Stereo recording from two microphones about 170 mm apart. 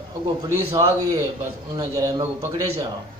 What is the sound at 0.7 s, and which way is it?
A man's voice, 15° right (ahead or behind).